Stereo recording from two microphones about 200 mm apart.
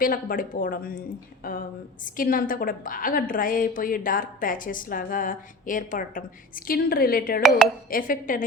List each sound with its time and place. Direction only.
0.0 s a woman's voice: 45° left (ahead or behind)
2.1 s a woman's voice: 45° left (ahead or behind)